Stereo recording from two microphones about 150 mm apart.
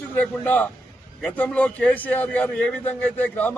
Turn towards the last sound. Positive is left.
turn(degrees=10)  # may be behind; listen again after turning